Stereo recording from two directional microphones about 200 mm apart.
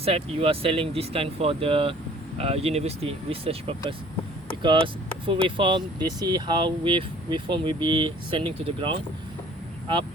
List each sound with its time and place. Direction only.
0.0 s speech: 30° right (ahead or behind)